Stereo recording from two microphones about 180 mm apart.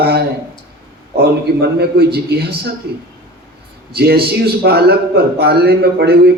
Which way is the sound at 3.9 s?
60° right (ahead or behind).